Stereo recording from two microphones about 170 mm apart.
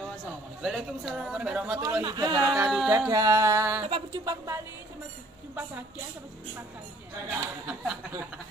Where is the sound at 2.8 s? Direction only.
15° right (ahead or behind).